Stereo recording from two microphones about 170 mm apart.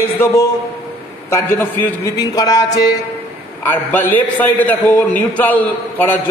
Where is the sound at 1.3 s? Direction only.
10° left (ahead or behind).